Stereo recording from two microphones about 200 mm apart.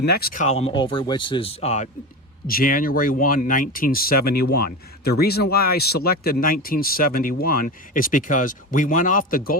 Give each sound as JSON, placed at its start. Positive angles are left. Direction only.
{"t": 0.0, "sound": "speech", "side_deg": 50}
{"t": 0.4, "sound": "speech", "side_deg": 30}
{"t": 2.5, "sound": "speech", "side_deg": 45}